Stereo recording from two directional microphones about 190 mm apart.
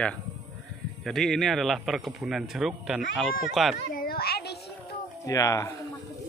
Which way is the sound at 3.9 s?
50° left (ahead or behind).